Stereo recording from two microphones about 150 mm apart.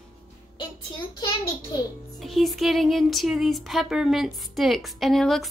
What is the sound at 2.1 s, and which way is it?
Speech, centre (ahead or behind).